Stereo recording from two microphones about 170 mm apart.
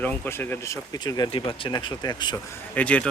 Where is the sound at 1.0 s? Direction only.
25° left (ahead or behind).